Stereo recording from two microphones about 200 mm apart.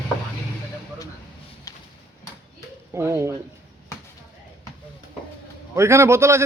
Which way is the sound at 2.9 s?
15° right (ahead or behind).